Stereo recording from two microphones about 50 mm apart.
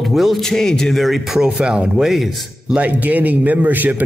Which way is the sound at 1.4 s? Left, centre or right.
Centre.